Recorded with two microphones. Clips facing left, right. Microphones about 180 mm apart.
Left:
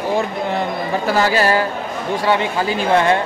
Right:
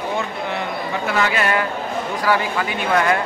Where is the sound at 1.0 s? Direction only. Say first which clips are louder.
Left 4 dB; 35° left (ahead or behind).